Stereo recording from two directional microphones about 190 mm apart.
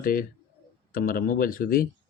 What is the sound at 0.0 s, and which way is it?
Speech, 50° left (ahead or behind).